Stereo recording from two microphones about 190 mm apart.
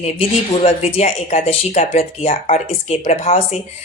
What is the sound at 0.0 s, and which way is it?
Speech, 35° left (ahead or behind).